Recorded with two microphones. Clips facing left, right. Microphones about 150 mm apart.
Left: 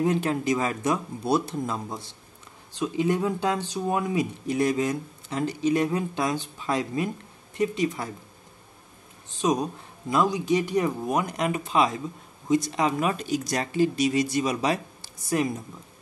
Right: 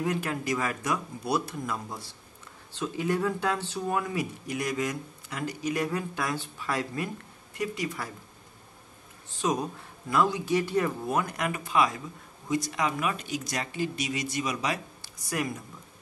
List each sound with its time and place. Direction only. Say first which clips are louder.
0.0 s speech: left 6 dB; 25° left (ahead or behind)
9.3 s speech: left 4 dB; 20° left (ahead or behind)